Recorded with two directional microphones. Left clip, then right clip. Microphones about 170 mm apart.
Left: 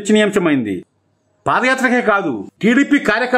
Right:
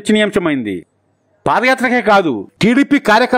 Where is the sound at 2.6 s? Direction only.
50° right (ahead or behind).